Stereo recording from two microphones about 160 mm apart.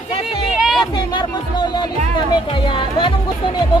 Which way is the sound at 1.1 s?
25° left (ahead or behind).